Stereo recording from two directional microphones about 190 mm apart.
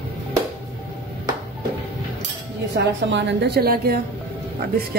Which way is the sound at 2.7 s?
65° right (ahead or behind).